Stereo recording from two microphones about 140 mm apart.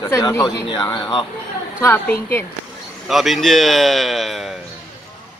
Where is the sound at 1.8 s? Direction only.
15° left (ahead or behind).